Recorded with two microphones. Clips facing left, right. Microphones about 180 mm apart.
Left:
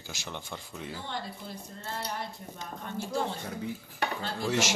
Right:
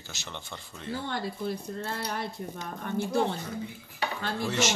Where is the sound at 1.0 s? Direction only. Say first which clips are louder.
Right 6 dB; 70° right (ahead or behind).